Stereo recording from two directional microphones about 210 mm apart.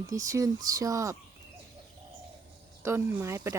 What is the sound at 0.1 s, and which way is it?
Speech, 15° right (ahead or behind).